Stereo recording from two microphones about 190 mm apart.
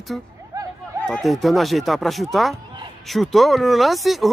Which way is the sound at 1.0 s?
Centre (ahead or behind).